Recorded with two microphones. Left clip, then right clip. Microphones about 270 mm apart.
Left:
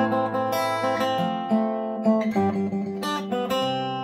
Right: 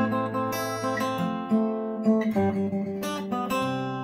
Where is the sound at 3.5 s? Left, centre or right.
Left.